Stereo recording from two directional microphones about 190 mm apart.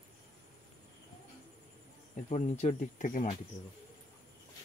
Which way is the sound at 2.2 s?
35° left (ahead or behind).